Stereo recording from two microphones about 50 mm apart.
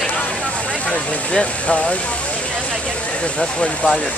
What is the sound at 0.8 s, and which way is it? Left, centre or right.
Speech, left.